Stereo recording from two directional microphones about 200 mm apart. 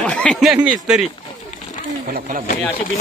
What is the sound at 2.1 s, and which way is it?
Speech, 45° right (ahead or behind).